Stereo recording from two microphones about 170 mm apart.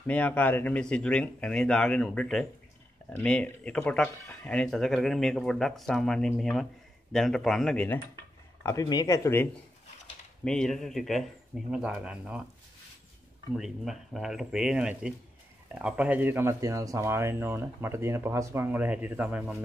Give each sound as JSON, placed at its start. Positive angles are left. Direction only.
{"t": 0.0, "sound": "speech", "side_deg": 10}
{"t": 8.6, "sound": "speech", "side_deg": 20}
{"t": 10.4, "sound": "speech", "side_deg": 5}
{"t": 13.6, "sound": "speech", "side_deg": -5}